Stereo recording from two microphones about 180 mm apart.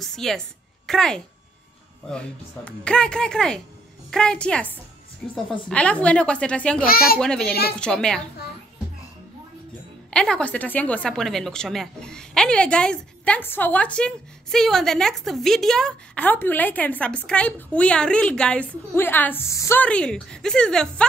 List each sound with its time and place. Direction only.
0.0 s a woman's voice: centre (ahead or behind)
6.8 s speech: 55° left (ahead or behind)
7.2 s a woman's voice: 5° left (ahead or behind)
10.1 s a woman's voice: 5° left (ahead or behind)